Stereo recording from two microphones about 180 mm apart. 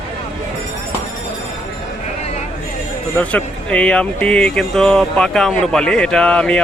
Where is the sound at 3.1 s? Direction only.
5° left (ahead or behind).